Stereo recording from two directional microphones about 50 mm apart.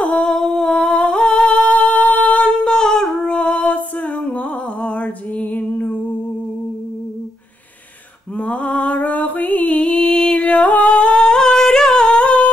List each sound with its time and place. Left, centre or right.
0.2 s humming: centre; by 2.5 s left
2.6 s humming: centre
3.3 s music: left
8.4 s mantra: left